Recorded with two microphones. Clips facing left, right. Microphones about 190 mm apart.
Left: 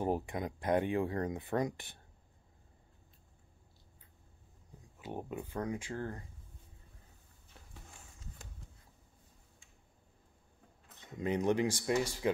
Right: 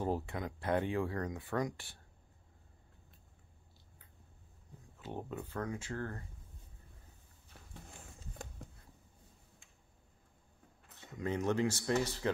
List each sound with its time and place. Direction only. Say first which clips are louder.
0.0 s speech: left 2 dB; 15° left (ahead or behind)
4.9 s speech: left 1 dB; 10° left (ahead or behind)
11.1 s speech: left 2 dB; 15° left (ahead or behind)